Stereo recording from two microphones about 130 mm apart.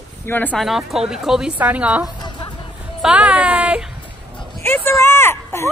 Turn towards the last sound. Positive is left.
turn(degrees=20)  # may be behind; listen again after turning